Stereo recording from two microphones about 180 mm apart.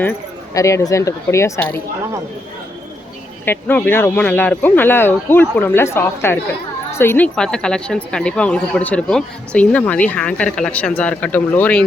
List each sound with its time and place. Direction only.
0.5 s speech: 15° left (ahead or behind)
3.4 s speech: 10° left (ahead or behind)